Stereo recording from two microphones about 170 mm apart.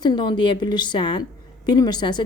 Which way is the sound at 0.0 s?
25° left (ahead or behind).